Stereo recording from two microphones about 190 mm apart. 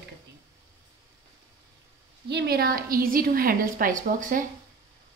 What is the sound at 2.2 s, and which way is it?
A woman's voice, 60° right (ahead or behind).